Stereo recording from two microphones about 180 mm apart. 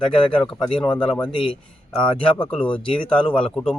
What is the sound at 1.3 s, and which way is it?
Speech, 30° left (ahead or behind).